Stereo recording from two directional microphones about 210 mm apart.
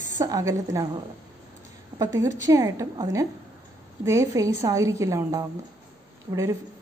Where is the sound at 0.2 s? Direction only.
15° right (ahead or behind).